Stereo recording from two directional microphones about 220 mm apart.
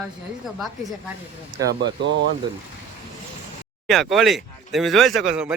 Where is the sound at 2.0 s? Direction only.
55° right (ahead or behind).